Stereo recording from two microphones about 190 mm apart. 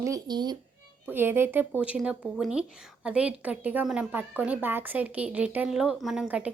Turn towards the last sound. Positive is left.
turn(degrees=-5)  # may be behind; listen again after turning